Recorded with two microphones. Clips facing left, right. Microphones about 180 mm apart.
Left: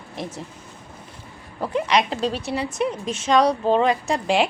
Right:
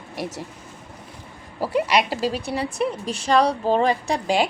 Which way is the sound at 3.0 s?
35° right (ahead or behind).